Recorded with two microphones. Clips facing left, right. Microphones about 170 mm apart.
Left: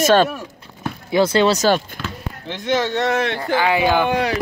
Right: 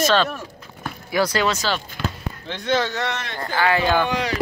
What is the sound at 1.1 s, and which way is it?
Speech, 25° left (ahead or behind).